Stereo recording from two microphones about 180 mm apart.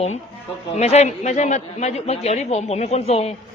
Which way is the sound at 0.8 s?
35° left (ahead or behind).